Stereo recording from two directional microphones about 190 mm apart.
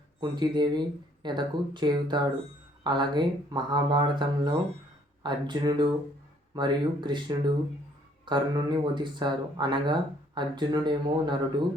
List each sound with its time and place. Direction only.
0.2 s speech: 25° right (ahead or behind)